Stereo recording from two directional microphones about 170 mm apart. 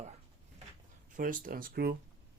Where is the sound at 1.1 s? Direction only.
55° right (ahead or behind).